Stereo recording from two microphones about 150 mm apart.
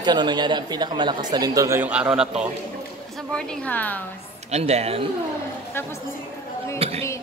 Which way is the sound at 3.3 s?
10° left (ahead or behind).